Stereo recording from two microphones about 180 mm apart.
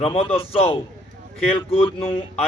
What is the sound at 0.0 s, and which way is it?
A man's voice, 35° left (ahead or behind).